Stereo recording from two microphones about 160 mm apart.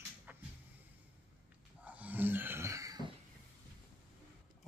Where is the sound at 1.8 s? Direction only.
10° right (ahead or behind).